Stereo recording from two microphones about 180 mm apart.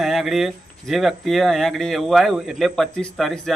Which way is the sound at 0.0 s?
Centre (ahead or behind).